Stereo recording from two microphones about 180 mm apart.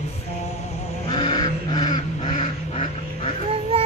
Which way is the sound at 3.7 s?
30° right (ahead or behind).